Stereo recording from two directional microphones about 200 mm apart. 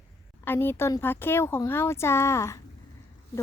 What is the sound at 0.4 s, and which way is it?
Speech, 10° left (ahead or behind).